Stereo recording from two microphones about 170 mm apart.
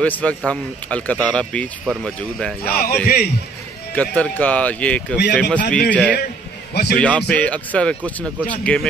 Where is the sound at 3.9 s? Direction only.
10° left (ahead or behind).